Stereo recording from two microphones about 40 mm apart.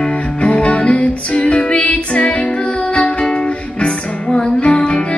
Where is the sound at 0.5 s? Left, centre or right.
Left.